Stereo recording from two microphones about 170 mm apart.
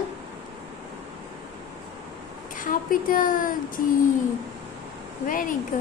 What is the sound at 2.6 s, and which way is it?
Speech, 55° left (ahead or behind).